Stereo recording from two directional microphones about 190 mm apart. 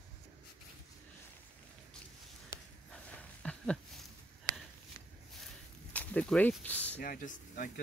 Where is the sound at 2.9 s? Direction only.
5° left (ahead or behind).